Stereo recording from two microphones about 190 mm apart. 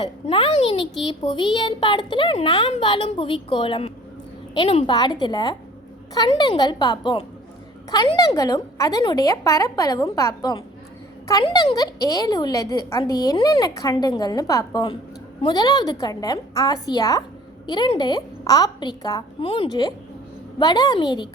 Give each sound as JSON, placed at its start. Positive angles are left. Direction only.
{"t": 0.0, "sound": "a woman's voice", "side_deg": 30}